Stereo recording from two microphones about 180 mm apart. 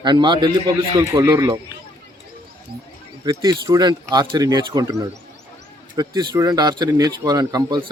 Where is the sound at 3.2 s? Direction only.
20° right (ahead or behind).